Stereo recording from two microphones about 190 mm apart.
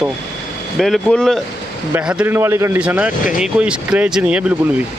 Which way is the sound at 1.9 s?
10° right (ahead or behind).